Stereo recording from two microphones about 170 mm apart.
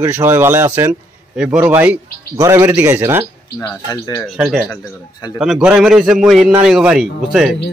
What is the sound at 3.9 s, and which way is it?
Speech, 20° left (ahead or behind).